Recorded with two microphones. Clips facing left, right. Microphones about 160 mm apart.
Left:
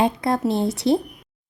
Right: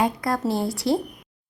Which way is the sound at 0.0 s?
25° left (ahead or behind).